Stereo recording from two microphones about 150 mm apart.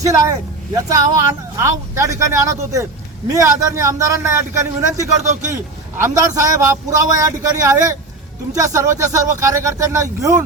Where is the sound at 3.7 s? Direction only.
20° right (ahead or behind).